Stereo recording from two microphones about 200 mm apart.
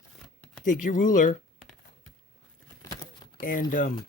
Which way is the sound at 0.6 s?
40° left (ahead or behind).